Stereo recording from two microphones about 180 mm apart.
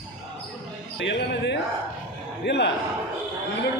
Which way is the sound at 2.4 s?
70° left (ahead or behind).